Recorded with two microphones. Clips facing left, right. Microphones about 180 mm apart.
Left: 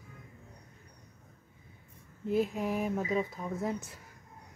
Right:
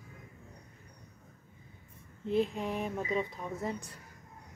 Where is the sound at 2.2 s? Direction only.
5° left (ahead or behind).